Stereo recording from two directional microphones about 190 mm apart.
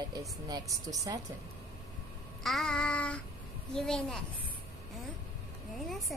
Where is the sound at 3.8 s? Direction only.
5° left (ahead or behind).